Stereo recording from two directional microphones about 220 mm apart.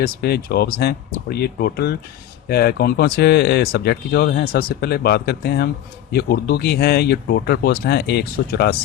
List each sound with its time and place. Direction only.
0.0 s speech: 45° left (ahead or behind)